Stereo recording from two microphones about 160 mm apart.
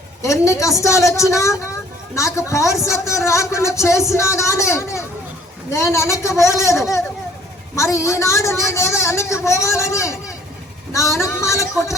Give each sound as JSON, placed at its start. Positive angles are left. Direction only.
{"t": 0.2, "sound": "a woman's voice", "side_deg": 20}